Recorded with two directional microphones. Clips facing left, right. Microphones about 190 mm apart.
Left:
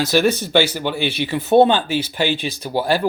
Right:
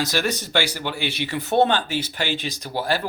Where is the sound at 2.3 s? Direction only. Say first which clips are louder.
Left 3 dB; 15° right (ahead or behind).